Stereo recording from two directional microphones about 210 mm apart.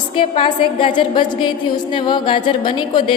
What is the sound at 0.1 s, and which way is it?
A woman's voice, 25° left (ahead or behind).